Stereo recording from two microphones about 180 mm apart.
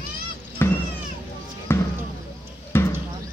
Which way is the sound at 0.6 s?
15° left (ahead or behind).